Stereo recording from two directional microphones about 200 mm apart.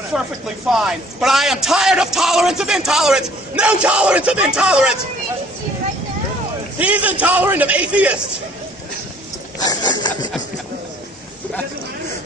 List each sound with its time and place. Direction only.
0.1 s a man's voice: 5° right (ahead or behind)
6.8 s a man's voice: 5° right (ahead or behind)
9.6 s a sound: 20° left (ahead or behind)